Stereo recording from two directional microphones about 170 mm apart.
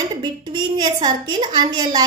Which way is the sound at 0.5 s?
25° right (ahead or behind).